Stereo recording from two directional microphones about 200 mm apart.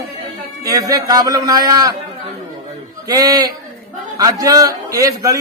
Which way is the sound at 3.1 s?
20° right (ahead or behind).